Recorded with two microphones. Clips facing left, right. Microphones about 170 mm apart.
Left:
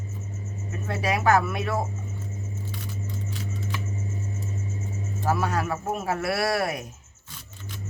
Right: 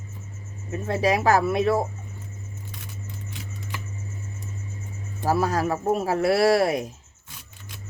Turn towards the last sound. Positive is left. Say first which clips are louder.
# right 6 dB
turn(degrees=-30)  # may be behind; listen again after turning